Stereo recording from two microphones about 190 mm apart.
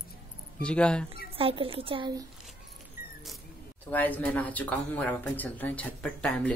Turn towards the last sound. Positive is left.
turn(degrees=5)  # may be behind; listen again after turning